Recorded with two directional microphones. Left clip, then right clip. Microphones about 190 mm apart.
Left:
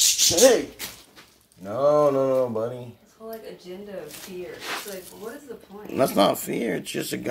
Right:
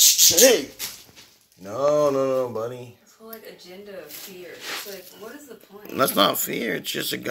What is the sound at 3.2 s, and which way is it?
Speech, 15° right (ahead or behind).